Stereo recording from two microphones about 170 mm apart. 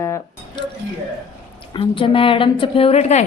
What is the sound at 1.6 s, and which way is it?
Speech, 30° left (ahead or behind).